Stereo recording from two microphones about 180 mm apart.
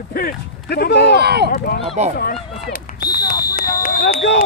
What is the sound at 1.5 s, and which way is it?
Speech, 60° left (ahead or behind).